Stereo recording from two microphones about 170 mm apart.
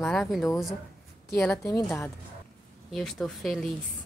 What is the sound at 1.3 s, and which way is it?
Speech, 15° left (ahead or behind).